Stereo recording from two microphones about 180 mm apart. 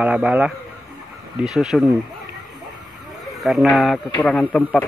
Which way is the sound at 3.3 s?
Centre (ahead or behind).